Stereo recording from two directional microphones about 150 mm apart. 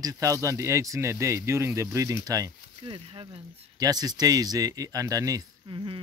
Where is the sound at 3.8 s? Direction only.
25° right (ahead or behind).